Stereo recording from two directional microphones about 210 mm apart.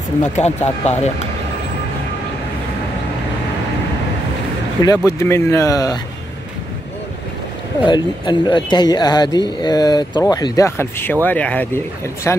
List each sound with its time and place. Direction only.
0.2 s speech: 30° left (ahead or behind)
4.8 s speech: 15° left (ahead or behind)
7.8 s speech: 20° left (ahead or behind)